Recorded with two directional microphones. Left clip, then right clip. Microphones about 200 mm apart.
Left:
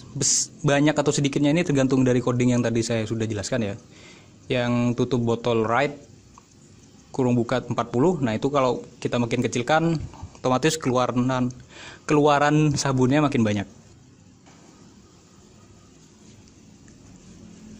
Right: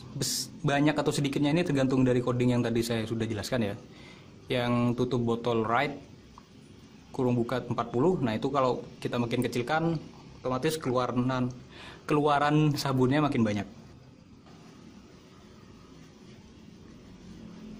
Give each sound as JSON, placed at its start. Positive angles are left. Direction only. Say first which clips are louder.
{"t": 0.2, "sound": "speech", "louder": "left 9 dB", "side_deg": 25}
{"t": 7.1, "sound": "speech", "louder": "left 6 dB", "side_deg": 25}